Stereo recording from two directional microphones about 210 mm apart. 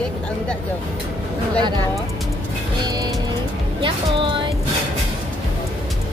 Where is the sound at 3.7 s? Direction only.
25° right (ahead or behind).